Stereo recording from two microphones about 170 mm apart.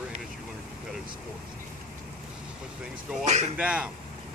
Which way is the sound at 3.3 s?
40° right (ahead or behind).